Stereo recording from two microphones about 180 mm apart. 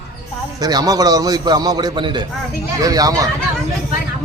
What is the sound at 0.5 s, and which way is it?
A man's voice, 20° right (ahead or behind).